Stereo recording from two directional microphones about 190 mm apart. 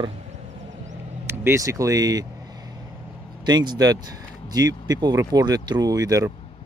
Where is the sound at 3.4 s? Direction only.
20° right (ahead or behind).